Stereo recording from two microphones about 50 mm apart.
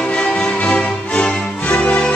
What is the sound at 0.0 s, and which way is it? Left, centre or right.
Music, centre.